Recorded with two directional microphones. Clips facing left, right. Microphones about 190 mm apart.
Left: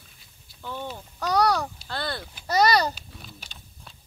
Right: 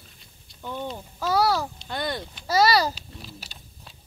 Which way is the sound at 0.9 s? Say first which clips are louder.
Even; 5° right (ahead or behind).